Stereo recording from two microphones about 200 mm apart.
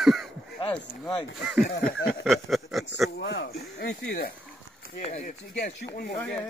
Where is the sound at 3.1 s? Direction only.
60° left (ahead or behind).